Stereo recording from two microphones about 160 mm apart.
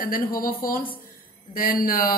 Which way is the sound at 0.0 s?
60° left (ahead or behind).